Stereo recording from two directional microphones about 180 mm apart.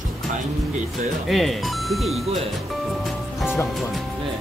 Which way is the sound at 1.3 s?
Centre (ahead or behind).